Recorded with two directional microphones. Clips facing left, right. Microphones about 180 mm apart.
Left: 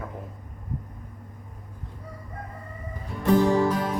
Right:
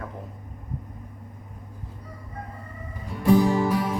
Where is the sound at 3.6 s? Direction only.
10° right (ahead or behind).